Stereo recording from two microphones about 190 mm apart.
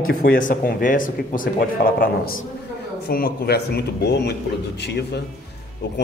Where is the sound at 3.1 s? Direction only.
55° left (ahead or behind).